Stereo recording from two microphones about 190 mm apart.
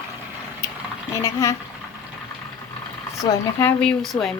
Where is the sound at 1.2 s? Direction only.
15° left (ahead or behind).